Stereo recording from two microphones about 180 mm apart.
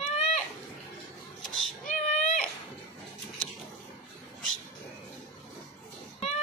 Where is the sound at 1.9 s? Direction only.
45° left (ahead or behind).